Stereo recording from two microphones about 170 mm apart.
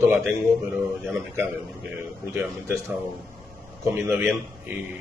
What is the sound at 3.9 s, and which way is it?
Speech, 15° right (ahead or behind).